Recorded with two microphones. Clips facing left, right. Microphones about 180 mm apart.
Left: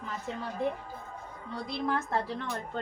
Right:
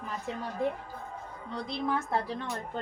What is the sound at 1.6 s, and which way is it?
Speech, 5° right (ahead or behind).